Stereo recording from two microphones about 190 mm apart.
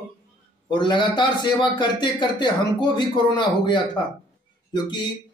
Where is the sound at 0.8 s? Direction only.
25° left (ahead or behind).